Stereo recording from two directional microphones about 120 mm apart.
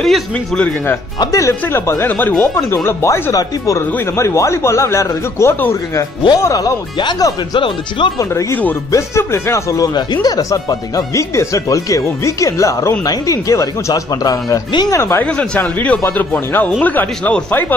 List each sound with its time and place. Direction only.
0.0 s speech: centre (ahead or behind)
1.2 s speech: 25° left (ahead or behind)
15.2 s speech: 10° left (ahead or behind)